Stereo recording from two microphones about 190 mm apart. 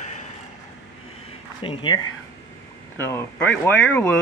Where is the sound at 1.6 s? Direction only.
25° left (ahead or behind).